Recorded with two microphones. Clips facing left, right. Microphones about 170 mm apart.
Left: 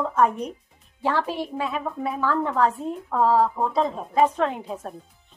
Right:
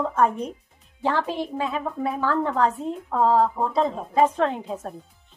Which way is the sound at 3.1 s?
20° right (ahead or behind).